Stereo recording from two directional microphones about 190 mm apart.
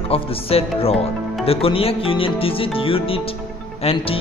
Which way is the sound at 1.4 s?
30° left (ahead or behind).